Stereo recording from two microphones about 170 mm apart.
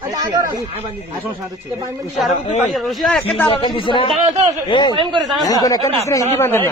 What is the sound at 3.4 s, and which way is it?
Speech, 30° left (ahead or behind).